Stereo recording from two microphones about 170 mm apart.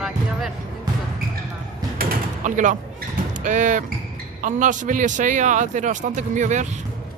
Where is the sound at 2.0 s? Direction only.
45° right (ahead or behind).